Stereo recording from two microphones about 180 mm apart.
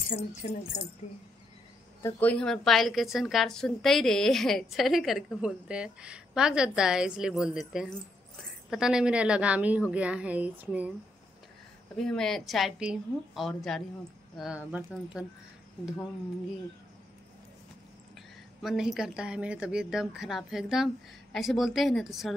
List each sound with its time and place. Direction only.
0.1 s speech: 45° left (ahead or behind)
2.0 s a woman's voice: 10° left (ahead or behind); by 10.9 s 10° right (ahead or behind)
12.0 s a woman's voice: 5° left (ahead or behind)
18.6 s a woman's voice: centre (ahead or behind)